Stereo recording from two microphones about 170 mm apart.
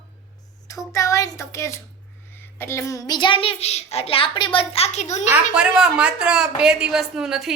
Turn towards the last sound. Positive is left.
turn(degrees=0)  # may be behind; listen again after turning